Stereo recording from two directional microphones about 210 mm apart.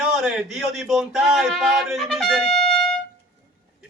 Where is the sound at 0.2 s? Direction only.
Centre (ahead or behind).